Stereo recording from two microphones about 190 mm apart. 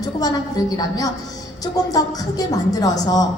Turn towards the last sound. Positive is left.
turn(degrees=20)  # may be behind; listen again after turning